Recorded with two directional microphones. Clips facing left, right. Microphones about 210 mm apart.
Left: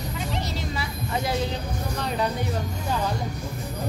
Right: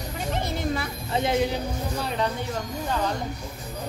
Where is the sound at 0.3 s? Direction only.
50° right (ahead or behind).